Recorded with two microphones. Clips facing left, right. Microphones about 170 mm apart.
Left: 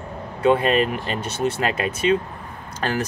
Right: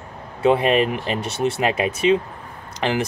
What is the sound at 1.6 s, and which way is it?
Speech, 20° right (ahead or behind).